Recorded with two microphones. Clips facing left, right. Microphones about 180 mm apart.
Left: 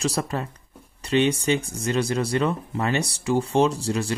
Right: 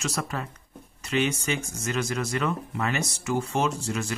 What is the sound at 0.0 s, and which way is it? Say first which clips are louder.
Speech: left 5 dB; 35° left (ahead or behind).